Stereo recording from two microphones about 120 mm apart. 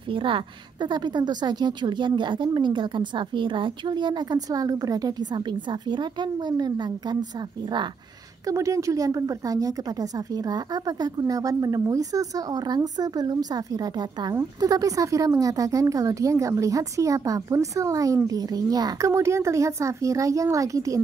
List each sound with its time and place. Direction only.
0.1 s a woman's voice: 45° right (ahead or behind)
8.5 s a woman's voice: 25° right (ahead or behind)